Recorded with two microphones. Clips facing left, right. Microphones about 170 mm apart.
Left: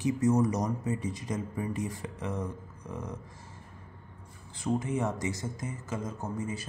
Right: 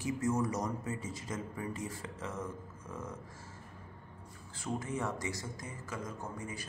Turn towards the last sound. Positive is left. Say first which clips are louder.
# left 7 dB
turn(degrees=25)  # may be behind; listen again after turning